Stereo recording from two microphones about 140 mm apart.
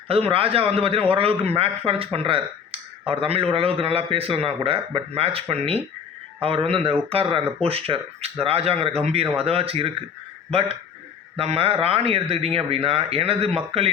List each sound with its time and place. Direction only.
0.1 s speech: 45° right (ahead or behind)